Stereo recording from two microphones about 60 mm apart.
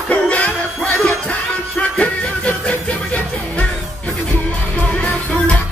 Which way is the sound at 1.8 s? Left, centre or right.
Centre.